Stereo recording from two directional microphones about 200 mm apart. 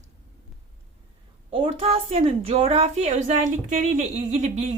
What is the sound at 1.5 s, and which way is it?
A woman's voice, 25° right (ahead or behind).